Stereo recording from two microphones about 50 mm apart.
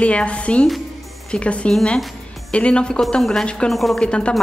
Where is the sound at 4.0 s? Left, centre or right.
Centre.